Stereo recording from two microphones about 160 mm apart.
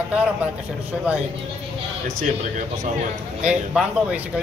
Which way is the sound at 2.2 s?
50° right (ahead or behind).